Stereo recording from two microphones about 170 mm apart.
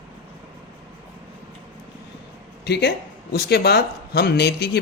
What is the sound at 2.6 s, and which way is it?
Speech, 75° left (ahead or behind).